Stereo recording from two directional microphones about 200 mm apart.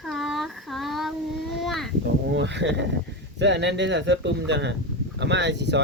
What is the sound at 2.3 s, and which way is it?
Speech, 60° right (ahead or behind).